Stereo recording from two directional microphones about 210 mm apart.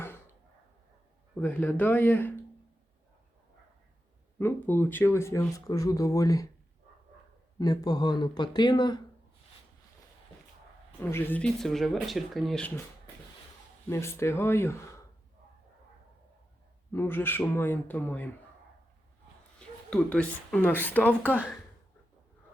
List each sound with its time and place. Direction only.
1.4 s speech: 5° left (ahead or behind)
4.4 s speech: 10° left (ahead or behind)
7.6 s speech: 20° left (ahead or behind)
11.0 s speech: 10° left (ahead or behind)
13.9 s speech: 10° left (ahead or behind)
16.9 s speech: 10° left (ahead or behind)
19.5 s speech: 5° left (ahead or behind)